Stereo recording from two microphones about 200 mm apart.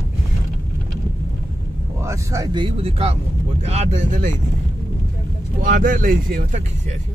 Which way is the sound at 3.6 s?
30° right (ahead or behind).